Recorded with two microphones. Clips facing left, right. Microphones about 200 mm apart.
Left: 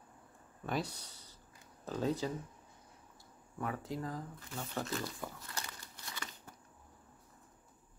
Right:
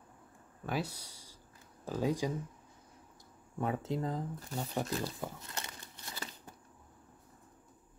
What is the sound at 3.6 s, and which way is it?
Speech, 25° right (ahead or behind).